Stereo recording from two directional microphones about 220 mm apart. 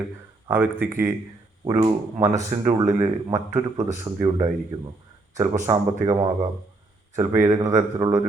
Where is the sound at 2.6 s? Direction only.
15° right (ahead or behind).